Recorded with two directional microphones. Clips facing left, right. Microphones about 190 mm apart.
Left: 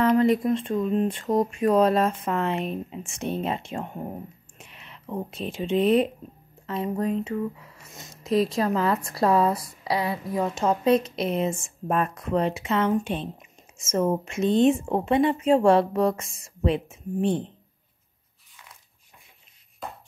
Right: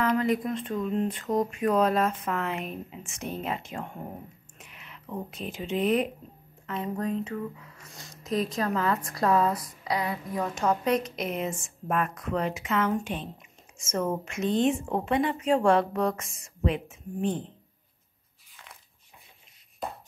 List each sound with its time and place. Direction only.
0.0 s speech: 30° left (ahead or behind)